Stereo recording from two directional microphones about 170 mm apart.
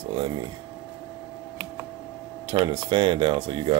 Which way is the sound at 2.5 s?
30° right (ahead or behind).